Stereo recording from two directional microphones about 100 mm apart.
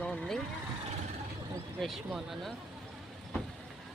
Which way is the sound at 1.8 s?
Centre (ahead or behind).